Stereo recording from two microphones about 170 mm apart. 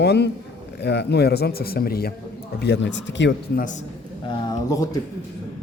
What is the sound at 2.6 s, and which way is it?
Speech, 85° left.